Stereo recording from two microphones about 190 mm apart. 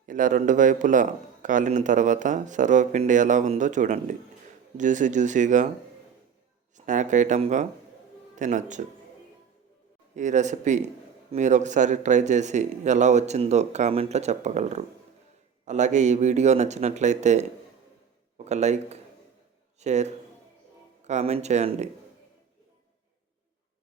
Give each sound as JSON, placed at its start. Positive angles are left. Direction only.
{"t": 0.0, "sound": "a man's voice", "side_deg": -45}
{"t": 6.7, "sound": "a man's voice", "side_deg": -40}
{"t": 10.2, "sound": "a man's voice", "side_deg": -40}
{"t": 18.4, "sound": "a man's voice", "side_deg": -35}